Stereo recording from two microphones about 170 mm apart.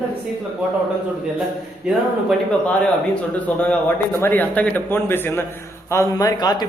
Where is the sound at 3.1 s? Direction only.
5° left (ahead or behind).